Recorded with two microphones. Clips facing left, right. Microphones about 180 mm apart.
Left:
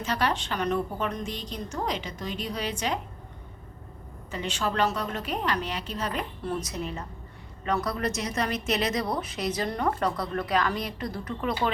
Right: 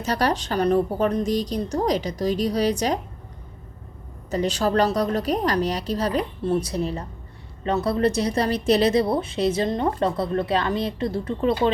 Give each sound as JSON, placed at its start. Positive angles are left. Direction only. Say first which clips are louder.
{"t": 0.0, "sound": "a woman's voice", "louder": "right 5 dB", "side_deg": -40}
{"t": 4.3, "sound": "a woman's voice", "louder": "right 8 dB", "side_deg": -40}